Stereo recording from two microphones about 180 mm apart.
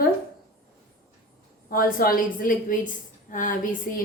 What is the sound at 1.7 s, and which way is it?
A woman's voice, 55° left (ahead or behind).